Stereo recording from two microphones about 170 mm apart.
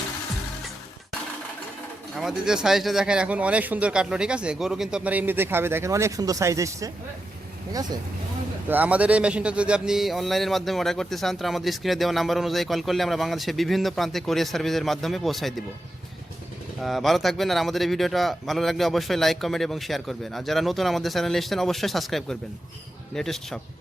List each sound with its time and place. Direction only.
2.1 s speech: 5° right (ahead or behind); by 7.9 s 20° right (ahead or behind)
8.7 s a man's voice: 10° right (ahead or behind)
16.8 s a man's voice: centre (ahead or behind)